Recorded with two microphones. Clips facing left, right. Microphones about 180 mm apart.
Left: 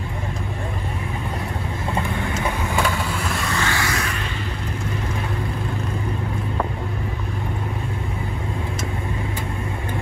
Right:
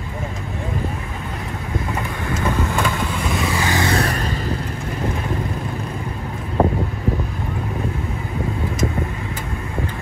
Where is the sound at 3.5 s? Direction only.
15° right (ahead or behind).